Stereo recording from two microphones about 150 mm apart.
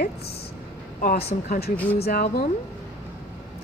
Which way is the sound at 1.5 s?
90° left.